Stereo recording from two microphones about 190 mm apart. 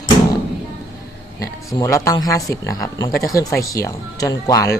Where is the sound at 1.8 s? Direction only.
15° left (ahead or behind).